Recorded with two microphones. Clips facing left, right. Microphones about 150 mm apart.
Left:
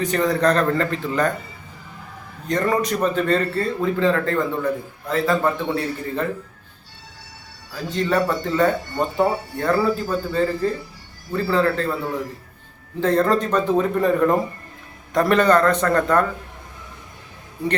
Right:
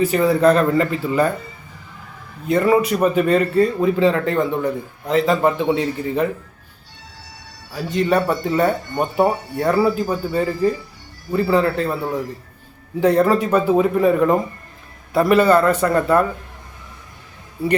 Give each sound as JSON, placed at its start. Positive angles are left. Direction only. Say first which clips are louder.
{"t": 0.0, "sound": "a man's voice", "louder": "right 4 dB", "side_deg": -5}
{"t": 2.5, "sound": "a man's voice", "louder": "right 5 dB", "side_deg": -5}
{"t": 7.7, "sound": "a man's voice", "louder": "right 3 dB", "side_deg": -15}
{"t": 13.0, "sound": "a man's voice", "louder": "right 3 dB", "side_deg": -10}